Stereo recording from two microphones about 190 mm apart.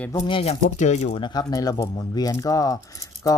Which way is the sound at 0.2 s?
30° left (ahead or behind).